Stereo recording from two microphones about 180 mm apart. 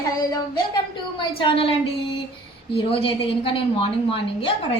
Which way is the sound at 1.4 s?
30° left (ahead or behind).